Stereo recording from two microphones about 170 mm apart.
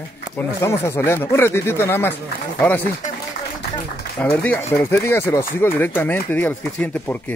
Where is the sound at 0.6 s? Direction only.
15° left (ahead or behind).